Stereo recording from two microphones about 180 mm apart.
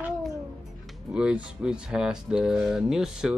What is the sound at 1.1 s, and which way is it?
Speech, 5° right (ahead or behind).